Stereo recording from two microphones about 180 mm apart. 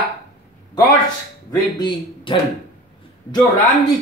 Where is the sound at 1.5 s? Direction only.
25° left (ahead or behind).